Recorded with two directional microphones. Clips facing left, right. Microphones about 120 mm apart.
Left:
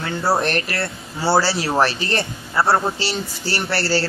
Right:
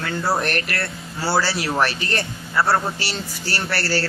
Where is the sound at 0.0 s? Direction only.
30° left (ahead or behind).